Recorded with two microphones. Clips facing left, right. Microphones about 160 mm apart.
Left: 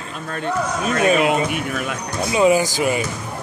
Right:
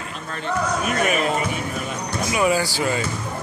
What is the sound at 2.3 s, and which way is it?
Speech, 20° left (ahead or behind).